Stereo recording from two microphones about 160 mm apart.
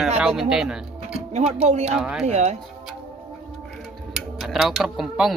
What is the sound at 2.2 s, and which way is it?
Speech, 45° right (ahead or behind).